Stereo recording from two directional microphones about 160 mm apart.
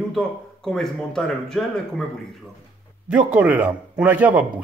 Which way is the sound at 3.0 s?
10° right (ahead or behind).